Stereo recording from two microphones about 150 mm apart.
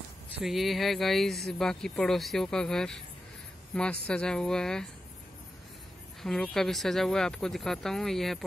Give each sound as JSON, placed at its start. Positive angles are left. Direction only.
{"t": 0.4, "sound": "speech", "side_deg": 0}
{"t": 6.2, "sound": "speech", "side_deg": 5}